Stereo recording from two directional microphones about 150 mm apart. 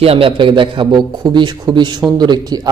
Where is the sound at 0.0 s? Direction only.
40° right (ahead or behind).